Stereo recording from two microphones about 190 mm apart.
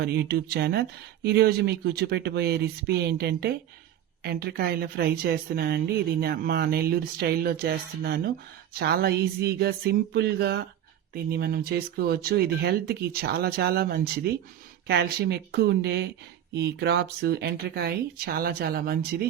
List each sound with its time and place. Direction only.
0.0 s a woman's voice: 55° right (ahead or behind)